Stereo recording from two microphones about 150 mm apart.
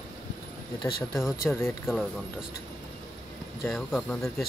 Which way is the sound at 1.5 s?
15° left (ahead or behind).